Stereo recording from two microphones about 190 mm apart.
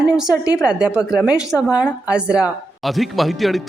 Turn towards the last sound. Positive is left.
turn(degrees=0)  # may be behind; listen again after turning